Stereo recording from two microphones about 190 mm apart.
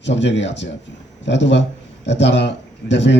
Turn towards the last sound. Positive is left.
turn(degrees=70)  # may be behind; listen again after turning